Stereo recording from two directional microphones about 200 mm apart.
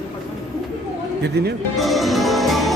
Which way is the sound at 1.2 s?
55° right (ahead or behind).